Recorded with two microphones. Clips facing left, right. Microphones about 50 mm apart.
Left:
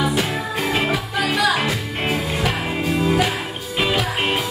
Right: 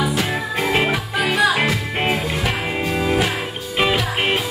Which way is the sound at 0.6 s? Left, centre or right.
Centre.